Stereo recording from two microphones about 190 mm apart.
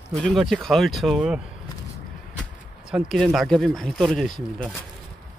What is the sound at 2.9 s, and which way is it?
Speech, centre (ahead or behind).